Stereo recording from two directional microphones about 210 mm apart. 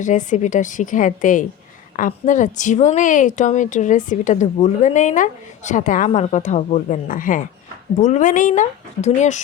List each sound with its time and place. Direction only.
0.0 s a woman's voice: 35° left (ahead or behind)